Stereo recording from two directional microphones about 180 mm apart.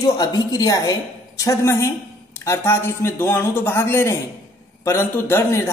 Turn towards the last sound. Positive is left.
turn(degrees=15)  # may be behind; listen again after turning